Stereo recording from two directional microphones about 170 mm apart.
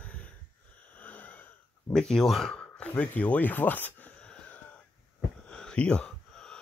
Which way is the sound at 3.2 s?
10° left (ahead or behind).